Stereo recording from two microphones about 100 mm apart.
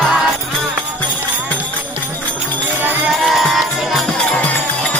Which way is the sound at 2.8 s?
20° right (ahead or behind).